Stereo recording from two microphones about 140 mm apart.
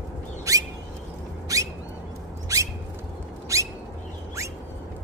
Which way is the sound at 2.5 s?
25° right (ahead or behind).